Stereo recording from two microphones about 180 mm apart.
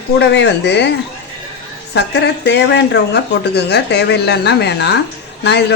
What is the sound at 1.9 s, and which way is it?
Speech, 70° left (ahead or behind).